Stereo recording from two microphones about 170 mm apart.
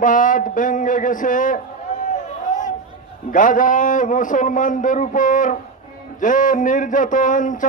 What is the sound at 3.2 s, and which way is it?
Speech, 50° left (ahead or behind).